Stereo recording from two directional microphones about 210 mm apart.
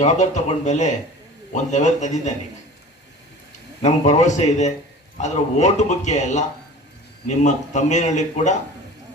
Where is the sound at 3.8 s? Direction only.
35° left (ahead or behind).